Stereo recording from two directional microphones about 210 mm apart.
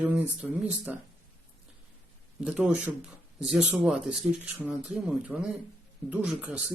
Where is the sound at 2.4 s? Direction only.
5° right (ahead or behind).